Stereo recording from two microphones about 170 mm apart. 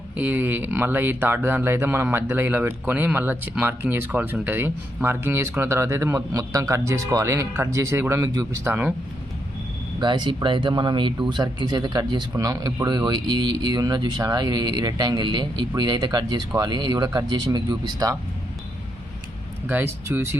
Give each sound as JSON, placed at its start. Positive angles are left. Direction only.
{"t": 0.2, "sound": "speech", "side_deg": -10}
{"t": 10.0, "sound": "speech", "side_deg": -25}
{"t": 19.6, "sound": "speech", "side_deg": -15}